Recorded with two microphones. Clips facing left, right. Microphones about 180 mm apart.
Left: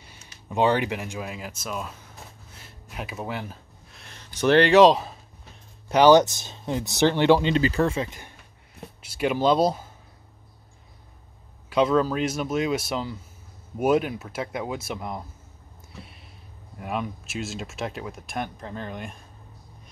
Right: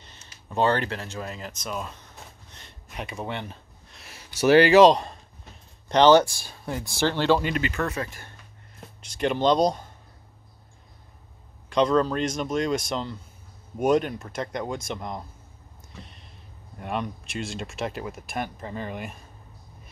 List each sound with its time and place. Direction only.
0.0 s speech: 10° left (ahead or behind)
2.5 s a sound: 5° left (ahead or behind)
5.9 s speech: 10° left (ahead or behind)
7.5 s speech: 30° left (ahead or behind)
9.0 s speech: 5° left (ahead or behind)
11.7 s speech: 5° left (ahead or behind)
15.9 s a sound: 5° left (ahead or behind)
16.7 s speech: 5° left (ahead or behind)